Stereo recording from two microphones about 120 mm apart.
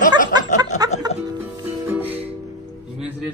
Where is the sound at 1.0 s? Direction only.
35° right (ahead or behind).